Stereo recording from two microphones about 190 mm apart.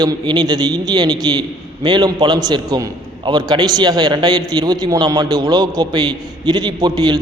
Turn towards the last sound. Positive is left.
turn(degrees=-20)  # may be behind; listen again after turning